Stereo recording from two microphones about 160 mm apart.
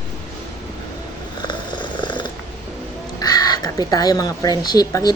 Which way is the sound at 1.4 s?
30° left (ahead or behind).